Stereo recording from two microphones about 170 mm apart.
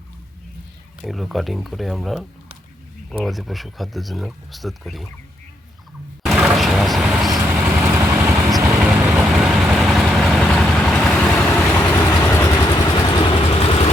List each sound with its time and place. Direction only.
1.0 s speech: centre (ahead or behind)
6.2 s vehicle: centre (ahead or behind)
7.6 s vehicle: 10° right (ahead or behind); by 13.9 s 35° left (ahead or behind)